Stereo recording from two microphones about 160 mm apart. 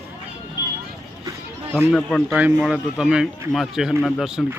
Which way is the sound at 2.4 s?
5° right (ahead or behind).